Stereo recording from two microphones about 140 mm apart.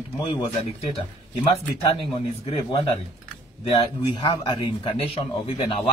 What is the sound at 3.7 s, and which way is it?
A man's voice, 30° left (ahead or behind).